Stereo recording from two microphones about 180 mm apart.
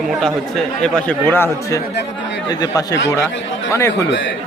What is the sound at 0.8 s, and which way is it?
A man's voice, 5° left (ahead or behind).